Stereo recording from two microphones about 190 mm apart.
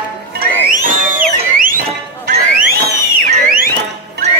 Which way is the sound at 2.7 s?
50° right (ahead or behind).